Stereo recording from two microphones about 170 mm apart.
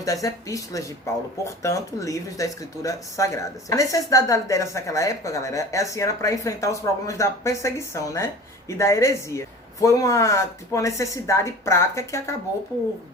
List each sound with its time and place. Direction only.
0.0 s speech: 20° left (ahead or behind)